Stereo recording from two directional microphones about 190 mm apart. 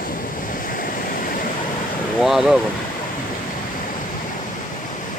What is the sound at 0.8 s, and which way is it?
Stream, 50° left (ahead or behind).